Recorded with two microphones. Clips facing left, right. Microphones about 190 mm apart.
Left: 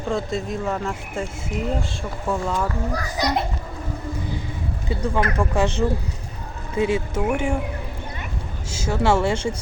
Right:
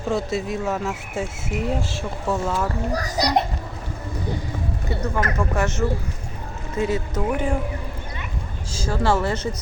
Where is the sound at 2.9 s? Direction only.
35° right (ahead or behind).